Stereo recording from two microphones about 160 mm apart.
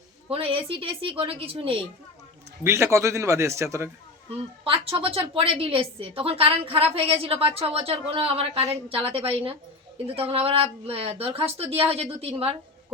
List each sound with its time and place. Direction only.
0.3 s a woman's voice: 35° right (ahead or behind)
2.6 s a man's voice: 15° right (ahead or behind)
4.6 s a woman's voice: 35° right (ahead or behind)